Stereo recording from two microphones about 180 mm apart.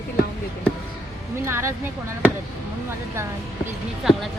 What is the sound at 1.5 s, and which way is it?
Speech, 15° right (ahead or behind).